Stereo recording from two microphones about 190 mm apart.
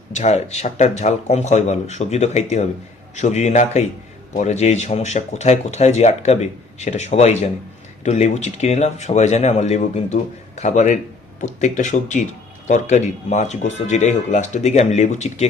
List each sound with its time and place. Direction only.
0.2 s speech: 35° left (ahead or behind)